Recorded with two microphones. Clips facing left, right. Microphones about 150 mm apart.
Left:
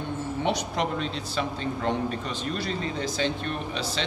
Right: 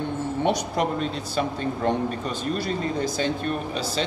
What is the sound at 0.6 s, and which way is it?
Speech, 45° right (ahead or behind).